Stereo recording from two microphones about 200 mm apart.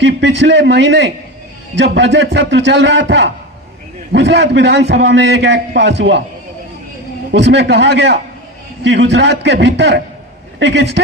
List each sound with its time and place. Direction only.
0.0 s a man's voice: 65° right (ahead or behind)
7.3 s a man's voice: 60° right (ahead or behind)